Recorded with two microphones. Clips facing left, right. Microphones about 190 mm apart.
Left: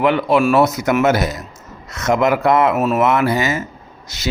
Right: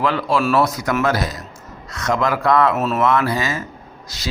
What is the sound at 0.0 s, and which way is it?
A man's voice, 20° left (ahead or behind).